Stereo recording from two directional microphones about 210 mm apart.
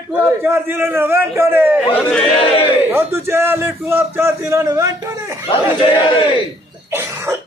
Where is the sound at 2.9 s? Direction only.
10° right (ahead or behind).